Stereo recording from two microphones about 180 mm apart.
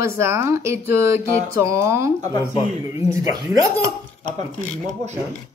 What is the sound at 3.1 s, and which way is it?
Speech, 15° right (ahead or behind).